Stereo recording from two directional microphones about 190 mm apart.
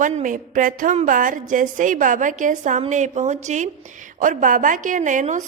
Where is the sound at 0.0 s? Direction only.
40° right (ahead or behind).